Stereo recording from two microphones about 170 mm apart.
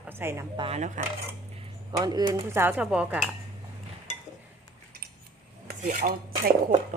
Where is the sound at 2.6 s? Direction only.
10° right (ahead or behind).